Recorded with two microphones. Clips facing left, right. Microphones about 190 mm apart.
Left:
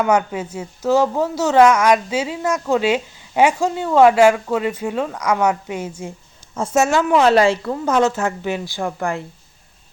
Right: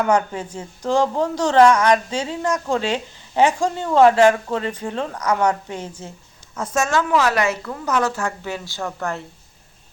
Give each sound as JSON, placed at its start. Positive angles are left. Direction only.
{"t": 0.0, "sound": "speech", "side_deg": 10}
{"t": 6.5, "sound": "a woman's voice", "side_deg": 25}